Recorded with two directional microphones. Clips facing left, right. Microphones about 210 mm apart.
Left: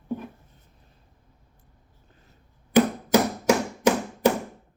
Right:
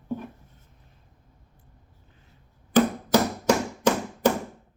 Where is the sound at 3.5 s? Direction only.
10° left (ahead or behind).